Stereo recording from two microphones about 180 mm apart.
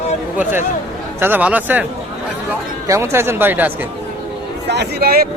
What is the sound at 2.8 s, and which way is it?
Speech, 15° right (ahead or behind).